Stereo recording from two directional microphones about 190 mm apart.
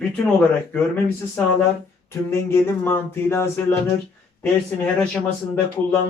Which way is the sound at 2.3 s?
15° left (ahead or behind).